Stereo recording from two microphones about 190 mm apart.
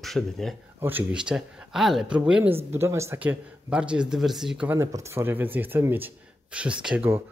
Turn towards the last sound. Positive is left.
turn(degrees=-10)  # may be behind; listen again after turning